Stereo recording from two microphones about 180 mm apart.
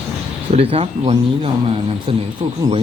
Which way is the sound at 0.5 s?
35° right (ahead or behind).